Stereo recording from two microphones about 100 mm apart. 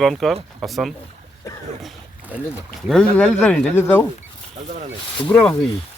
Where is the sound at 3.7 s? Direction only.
20° left (ahead or behind).